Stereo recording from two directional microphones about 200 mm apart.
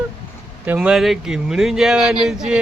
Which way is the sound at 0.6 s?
5° right (ahead or behind).